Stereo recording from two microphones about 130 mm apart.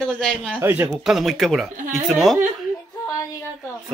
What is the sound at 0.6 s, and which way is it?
Speech, 15° right (ahead or behind).